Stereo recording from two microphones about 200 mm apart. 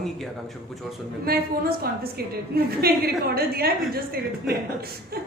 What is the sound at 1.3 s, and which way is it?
A woman's voice, 50° right (ahead or behind).